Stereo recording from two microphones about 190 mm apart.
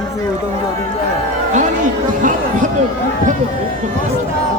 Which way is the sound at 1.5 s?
40° right (ahead or behind).